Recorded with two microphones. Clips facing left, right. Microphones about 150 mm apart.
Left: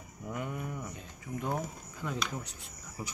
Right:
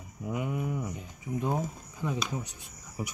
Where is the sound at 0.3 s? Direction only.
10° right (ahead or behind).